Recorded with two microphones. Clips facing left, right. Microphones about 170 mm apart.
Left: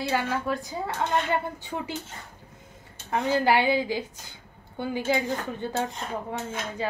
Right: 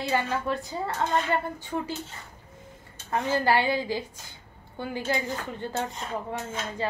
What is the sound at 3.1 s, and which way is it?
Speech, 10° left (ahead or behind).